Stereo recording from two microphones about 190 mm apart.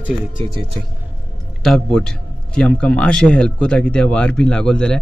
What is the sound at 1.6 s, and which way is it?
A man's voice, 5° left (ahead or behind).